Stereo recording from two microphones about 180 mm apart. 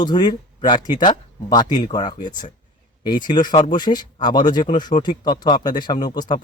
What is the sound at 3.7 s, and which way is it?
Speech, 25° left (ahead or behind).